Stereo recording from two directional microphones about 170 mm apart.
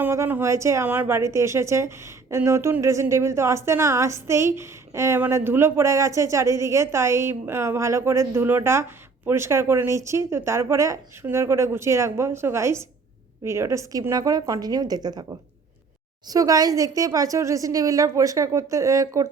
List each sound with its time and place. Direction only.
0.0 s a woman's voice: 15° right (ahead or behind)